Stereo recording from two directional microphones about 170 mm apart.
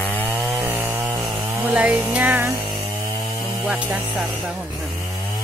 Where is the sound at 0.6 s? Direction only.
15° right (ahead or behind).